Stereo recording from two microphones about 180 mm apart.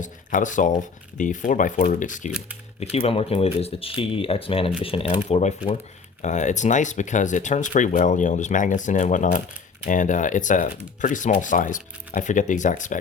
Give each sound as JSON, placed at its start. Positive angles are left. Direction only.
{"t": 0.0, "sound": "speech", "side_deg": 45}
{"t": 2.3, "sound": "a sound", "side_deg": -10}
{"t": 2.9, "sound": "speech", "side_deg": 35}